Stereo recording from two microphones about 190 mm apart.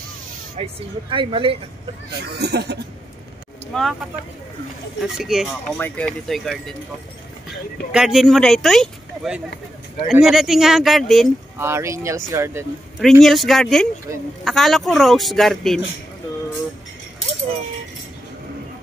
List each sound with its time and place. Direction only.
0.6 s speech: 30° right (ahead or behind)
2.3 s speech: 60° right (ahead or behind)
3.7 s speech: centre (ahead or behind)
7.9 s speech: 5° right (ahead or behind)
11.5 s speech: 15° right (ahead or behind)
13.0 s speech: centre (ahead or behind)